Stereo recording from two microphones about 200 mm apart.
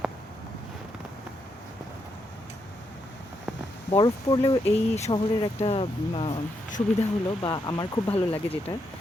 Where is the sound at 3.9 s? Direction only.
25° left (ahead or behind).